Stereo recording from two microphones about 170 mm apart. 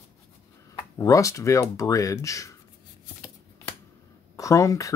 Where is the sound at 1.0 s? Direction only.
20° left (ahead or behind).